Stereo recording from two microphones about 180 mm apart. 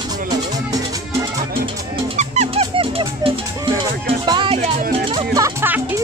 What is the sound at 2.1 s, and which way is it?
Music, 40° right (ahead or behind).